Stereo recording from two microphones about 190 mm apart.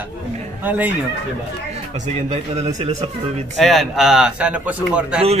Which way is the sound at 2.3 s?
35° right (ahead or behind).